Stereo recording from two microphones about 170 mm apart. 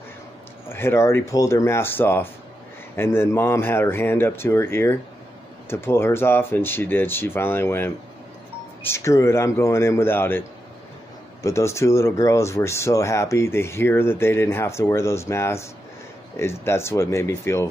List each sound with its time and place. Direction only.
0.7 s speech: 15° left (ahead or behind)
11.4 s speech: 15° left (ahead or behind)